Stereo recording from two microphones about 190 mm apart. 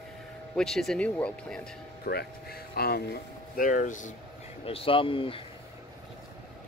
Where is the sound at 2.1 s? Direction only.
55° left (ahead or behind).